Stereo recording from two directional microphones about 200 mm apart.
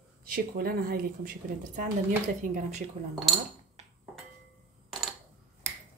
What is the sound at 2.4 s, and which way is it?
Speech, 40° right (ahead or behind).